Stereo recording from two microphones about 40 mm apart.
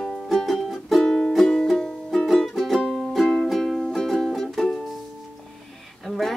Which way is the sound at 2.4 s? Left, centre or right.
Centre.